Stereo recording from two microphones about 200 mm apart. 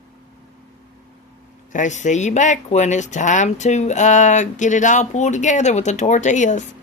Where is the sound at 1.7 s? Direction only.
35° left (ahead or behind).